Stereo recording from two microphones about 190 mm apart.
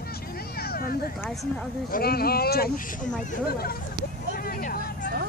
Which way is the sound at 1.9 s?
55° left (ahead or behind).